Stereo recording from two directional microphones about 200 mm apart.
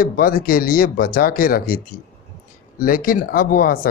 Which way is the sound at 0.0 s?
45° left (ahead or behind).